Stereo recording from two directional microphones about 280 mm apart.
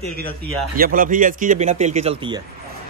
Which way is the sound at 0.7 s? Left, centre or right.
Right.